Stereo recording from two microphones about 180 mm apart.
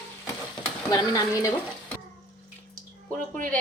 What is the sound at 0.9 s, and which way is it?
Speech, 20° left (ahead or behind).